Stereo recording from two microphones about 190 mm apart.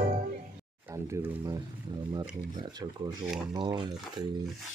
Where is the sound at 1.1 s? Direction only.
15° right (ahead or behind).